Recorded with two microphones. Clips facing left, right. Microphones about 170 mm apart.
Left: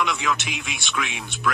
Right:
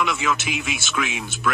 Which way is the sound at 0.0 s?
Centre (ahead or behind).